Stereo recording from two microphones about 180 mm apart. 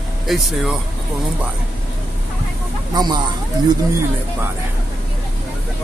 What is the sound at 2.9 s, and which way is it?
Speech, 25° right (ahead or behind).